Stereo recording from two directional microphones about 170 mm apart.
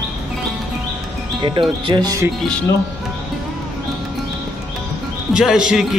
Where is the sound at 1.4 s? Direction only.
25° right (ahead or behind).